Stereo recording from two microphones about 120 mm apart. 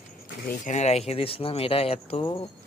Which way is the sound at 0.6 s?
75° left (ahead or behind).